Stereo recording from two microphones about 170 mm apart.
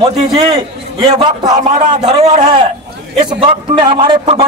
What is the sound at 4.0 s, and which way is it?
Speech, 35° right (ahead or behind).